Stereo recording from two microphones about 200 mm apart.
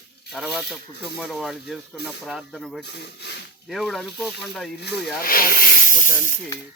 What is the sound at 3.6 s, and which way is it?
Speech, centre (ahead or behind).